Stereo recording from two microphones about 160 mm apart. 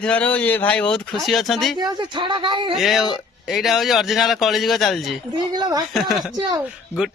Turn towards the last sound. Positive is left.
turn(degrees=-5)  # may be behind; listen again after turning